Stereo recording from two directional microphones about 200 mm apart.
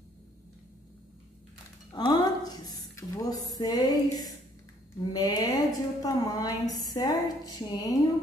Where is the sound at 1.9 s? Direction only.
20° left (ahead or behind).